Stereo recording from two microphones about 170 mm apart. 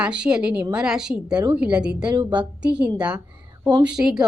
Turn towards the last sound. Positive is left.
turn(degrees=-5)  # may be behind; listen again after turning